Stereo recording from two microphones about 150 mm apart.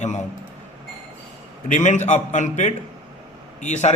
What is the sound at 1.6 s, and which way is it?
A man's voice, 55° left (ahead or behind).